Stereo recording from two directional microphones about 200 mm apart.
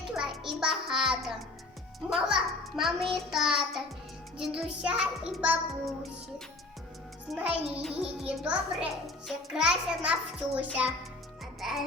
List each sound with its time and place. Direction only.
0.1 s music: centre (ahead or behind)
2.0 s a child's voice: 5° right (ahead or behind)
7.3 s a child's voice: centre (ahead or behind)